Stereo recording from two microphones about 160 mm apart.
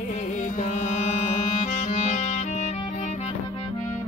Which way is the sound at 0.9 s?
45° left (ahead or behind).